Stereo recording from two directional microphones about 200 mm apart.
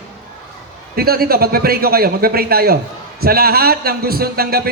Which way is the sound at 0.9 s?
50° right (ahead or behind).